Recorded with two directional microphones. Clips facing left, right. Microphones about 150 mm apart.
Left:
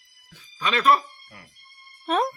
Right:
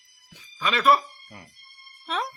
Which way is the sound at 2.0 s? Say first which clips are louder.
Left 7 dB; 45° left (ahead or behind).